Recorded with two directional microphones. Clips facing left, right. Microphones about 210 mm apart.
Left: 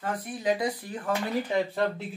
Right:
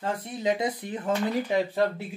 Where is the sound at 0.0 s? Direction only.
25° right (ahead or behind).